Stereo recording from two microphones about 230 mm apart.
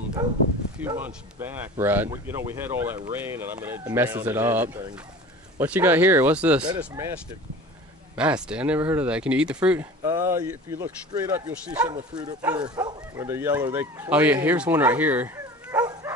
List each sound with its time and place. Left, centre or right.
0.7 s speech: centre
8.2 s speech: centre
10.0 s speech: centre
11.9 s speech: centre